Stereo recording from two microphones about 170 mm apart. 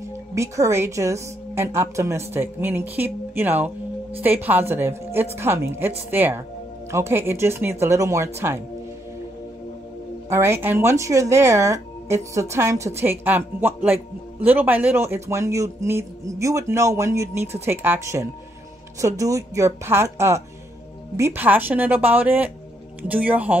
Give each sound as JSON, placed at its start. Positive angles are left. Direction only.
{"t": 0.4, "sound": "a woman's voice", "side_deg": -15}
{"t": 10.3, "sound": "a woman's voice", "side_deg": -15}